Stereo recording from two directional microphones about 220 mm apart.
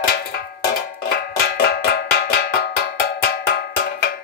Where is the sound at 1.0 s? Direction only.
45° left (ahead or behind).